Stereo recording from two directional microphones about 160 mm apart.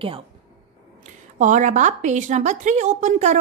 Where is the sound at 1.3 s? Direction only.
50° right (ahead or behind).